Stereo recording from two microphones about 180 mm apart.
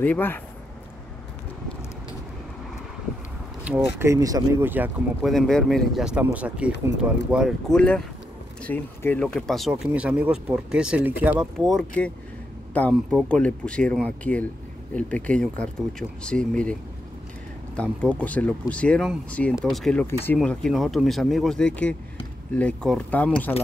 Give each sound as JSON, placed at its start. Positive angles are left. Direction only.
{"t": 0.0, "sound": "speech", "side_deg": 10}
{"t": 3.6, "sound": "speech", "side_deg": -15}
{"t": 5.3, "sound": "speech", "side_deg": 0}
{"t": 11.7, "sound": "speech", "side_deg": 5}
{"t": 18.1, "sound": "speech", "side_deg": 5}